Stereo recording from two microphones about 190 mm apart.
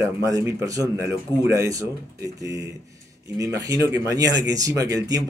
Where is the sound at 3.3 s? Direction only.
20° right (ahead or behind).